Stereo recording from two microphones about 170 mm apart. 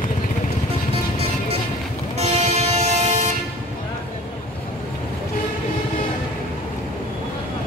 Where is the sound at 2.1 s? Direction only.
40° right (ahead or behind).